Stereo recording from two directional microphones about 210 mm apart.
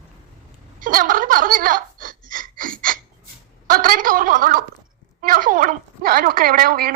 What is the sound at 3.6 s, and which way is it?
A woman's voice, 40° right (ahead or behind).